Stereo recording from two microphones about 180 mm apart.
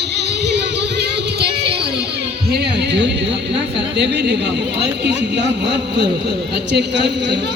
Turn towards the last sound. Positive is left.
turn(degrees=-75)  # may be behind; listen again after turning